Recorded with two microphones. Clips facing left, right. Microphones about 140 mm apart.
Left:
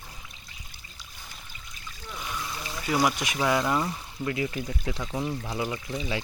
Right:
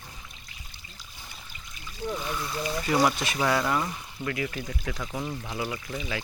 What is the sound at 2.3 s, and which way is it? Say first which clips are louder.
Speech: right 5 dB; centre (ahead or behind).